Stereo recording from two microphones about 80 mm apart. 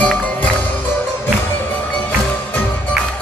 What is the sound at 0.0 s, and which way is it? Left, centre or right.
Music, centre.